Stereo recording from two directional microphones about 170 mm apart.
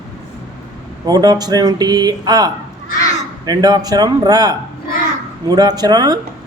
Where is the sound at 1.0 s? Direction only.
20° right (ahead or behind).